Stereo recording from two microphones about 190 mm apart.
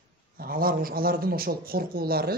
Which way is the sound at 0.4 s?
50° right (ahead or behind).